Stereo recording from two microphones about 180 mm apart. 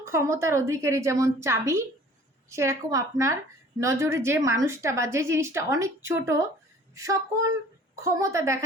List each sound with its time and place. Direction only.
0.0 s a woman's voice: 15° right (ahead or behind)